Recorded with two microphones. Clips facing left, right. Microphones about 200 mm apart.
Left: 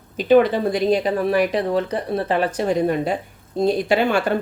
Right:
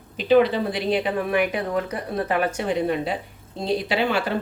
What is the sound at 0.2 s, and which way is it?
Speech, 50° left (ahead or behind).